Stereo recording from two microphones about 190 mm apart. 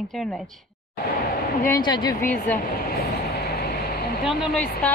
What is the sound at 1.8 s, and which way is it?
Speech, 25° left (ahead or behind).